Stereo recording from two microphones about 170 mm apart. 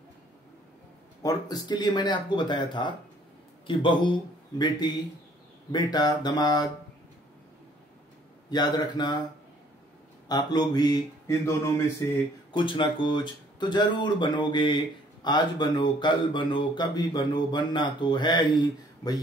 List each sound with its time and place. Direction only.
1.2 s speech: 20° left (ahead or behind)
8.5 s speech: 25° left (ahead or behind)
10.2 s speech: 25° left (ahead or behind)
12.5 s speech: 30° left (ahead or behind)